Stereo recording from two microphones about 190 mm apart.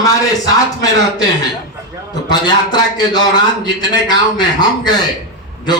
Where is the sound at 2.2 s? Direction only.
20° left (ahead or behind).